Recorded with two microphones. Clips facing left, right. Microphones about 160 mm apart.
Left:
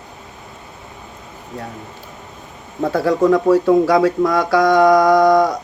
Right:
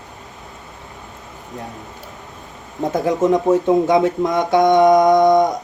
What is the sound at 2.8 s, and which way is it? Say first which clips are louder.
Speech: left 2 dB; 20° right (ahead or behind).